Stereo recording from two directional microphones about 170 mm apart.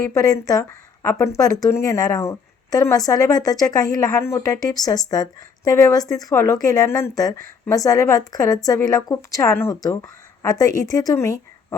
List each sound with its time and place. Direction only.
0.1 s a woman's voice: 20° left (ahead or behind)